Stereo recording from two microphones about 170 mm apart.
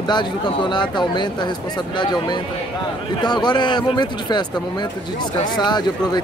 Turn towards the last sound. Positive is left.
turn(degrees=25)  # may be behind; listen again after turning